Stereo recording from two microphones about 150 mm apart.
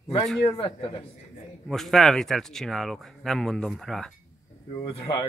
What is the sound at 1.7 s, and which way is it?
Speech, centre (ahead or behind).